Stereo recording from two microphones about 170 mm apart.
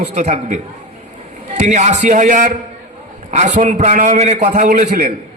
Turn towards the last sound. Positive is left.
turn(degrees=-45)  # may be behind; listen again after turning